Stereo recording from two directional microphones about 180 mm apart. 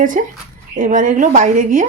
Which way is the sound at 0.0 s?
45° right (ahead or behind).